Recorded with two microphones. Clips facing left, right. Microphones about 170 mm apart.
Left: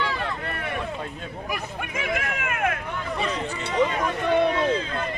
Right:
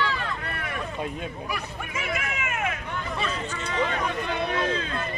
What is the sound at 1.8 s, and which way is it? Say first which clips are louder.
Speech: left 3 dB; 55° left (ahead or behind).